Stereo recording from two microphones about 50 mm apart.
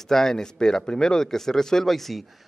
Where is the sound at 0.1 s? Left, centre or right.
Centre.